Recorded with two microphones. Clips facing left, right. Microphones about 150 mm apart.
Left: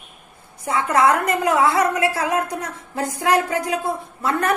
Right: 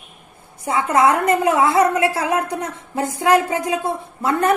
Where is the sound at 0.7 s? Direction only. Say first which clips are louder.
Right 1 dB; 25° right (ahead or behind).